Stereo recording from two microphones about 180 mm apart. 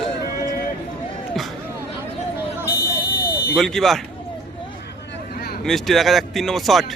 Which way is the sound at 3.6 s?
Centre (ahead or behind).